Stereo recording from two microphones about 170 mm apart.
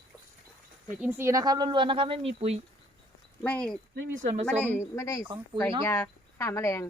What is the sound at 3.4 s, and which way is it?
Speech, 5° left (ahead or behind).